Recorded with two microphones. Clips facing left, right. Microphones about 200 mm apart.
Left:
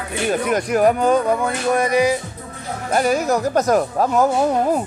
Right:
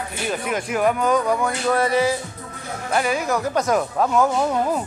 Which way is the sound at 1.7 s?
15° left (ahead or behind).